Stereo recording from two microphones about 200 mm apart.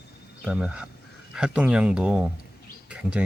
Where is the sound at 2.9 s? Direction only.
5° right (ahead or behind).